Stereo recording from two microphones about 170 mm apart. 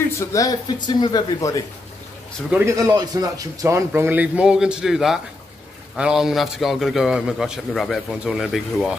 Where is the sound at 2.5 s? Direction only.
15° right (ahead or behind).